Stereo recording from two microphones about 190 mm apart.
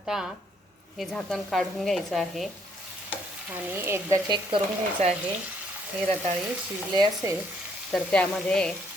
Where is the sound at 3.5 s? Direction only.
10° right (ahead or behind).